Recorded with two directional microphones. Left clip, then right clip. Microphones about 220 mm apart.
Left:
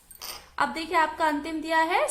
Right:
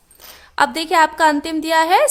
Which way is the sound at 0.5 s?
50° right (ahead or behind).